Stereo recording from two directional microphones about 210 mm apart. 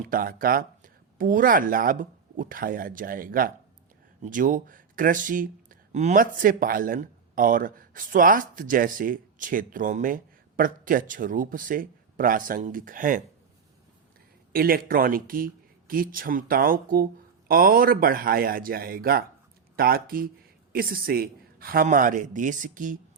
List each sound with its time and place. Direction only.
0.0 s speech: 40° right (ahead or behind)
14.5 s speech: 45° right (ahead or behind)